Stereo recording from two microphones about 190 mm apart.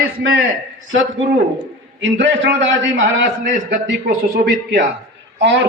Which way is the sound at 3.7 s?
55° right (ahead or behind).